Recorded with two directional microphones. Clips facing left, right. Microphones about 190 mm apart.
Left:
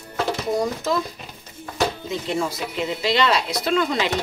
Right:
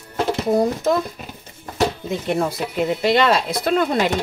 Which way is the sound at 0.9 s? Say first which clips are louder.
Right 4 dB; 50° right (ahead or behind).